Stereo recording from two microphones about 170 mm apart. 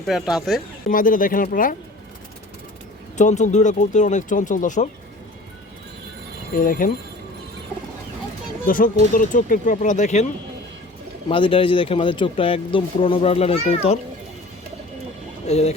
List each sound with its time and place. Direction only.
0.0 s speech: centre (ahead or behind)
0.9 s speech: 50° left (ahead or behind)
3.2 s speech: 45° left (ahead or behind)
6.5 s speech: 55° left (ahead or behind)
8.6 s speech: 55° left (ahead or behind)
11.3 s speech: 30° left (ahead or behind)
15.4 s speech: 40° left (ahead or behind)